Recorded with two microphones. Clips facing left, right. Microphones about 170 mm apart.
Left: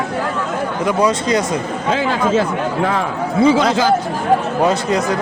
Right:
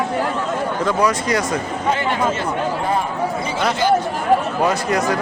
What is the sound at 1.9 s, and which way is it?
Speech, 90° left.